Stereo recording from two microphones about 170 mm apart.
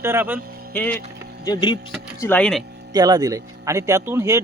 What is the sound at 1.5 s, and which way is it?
Speech, 25° left (ahead or behind).